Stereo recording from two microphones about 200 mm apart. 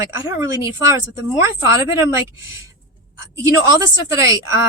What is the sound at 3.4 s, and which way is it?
Speech, 15° right (ahead or behind).